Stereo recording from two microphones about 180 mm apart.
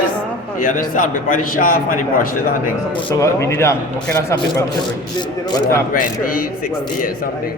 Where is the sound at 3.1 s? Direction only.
15° left (ahead or behind).